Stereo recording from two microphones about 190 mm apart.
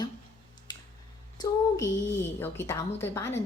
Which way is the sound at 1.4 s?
15° left (ahead or behind).